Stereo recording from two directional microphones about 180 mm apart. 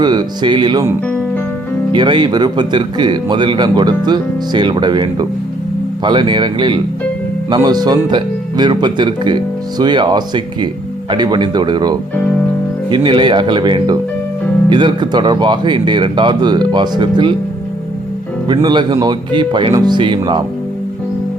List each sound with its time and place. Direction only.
0.0 s speech: 25° right (ahead or behind)
1.9 s speech: 25° right (ahead or behind)
18.4 s speech: 25° right (ahead or behind)